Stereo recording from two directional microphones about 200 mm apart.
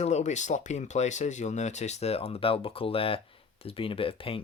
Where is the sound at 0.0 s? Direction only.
35° left (ahead or behind).